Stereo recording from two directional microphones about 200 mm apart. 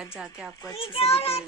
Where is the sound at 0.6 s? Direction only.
20° left (ahead or behind).